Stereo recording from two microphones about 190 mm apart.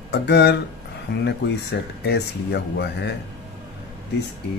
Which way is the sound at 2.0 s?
60° left (ahead or behind).